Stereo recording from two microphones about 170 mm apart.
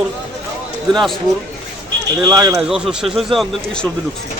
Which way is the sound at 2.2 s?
20° right (ahead or behind).